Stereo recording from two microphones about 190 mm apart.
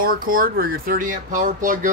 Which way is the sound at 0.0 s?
50° right (ahead or behind).